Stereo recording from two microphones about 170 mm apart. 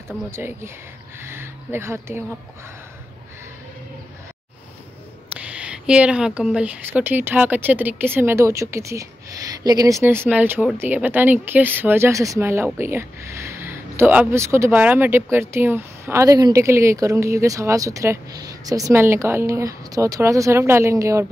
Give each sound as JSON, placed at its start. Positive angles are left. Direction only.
{"t": 0.3, "sound": "speech", "side_deg": -15}
{"t": 5.4, "sound": "speech", "side_deg": -5}